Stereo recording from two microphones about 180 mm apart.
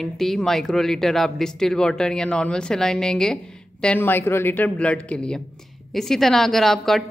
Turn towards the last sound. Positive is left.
turn(degrees=0)  # may be behind; listen again after turning